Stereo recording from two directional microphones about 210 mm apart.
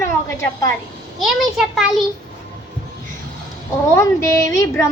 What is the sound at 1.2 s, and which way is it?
Child singing, centre (ahead or behind).